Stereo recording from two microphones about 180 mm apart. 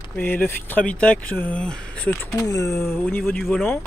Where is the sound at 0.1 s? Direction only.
10° left (ahead or behind).